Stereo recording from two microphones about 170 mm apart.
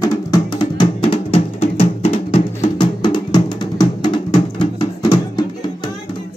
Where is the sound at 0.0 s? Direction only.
25° left (ahead or behind).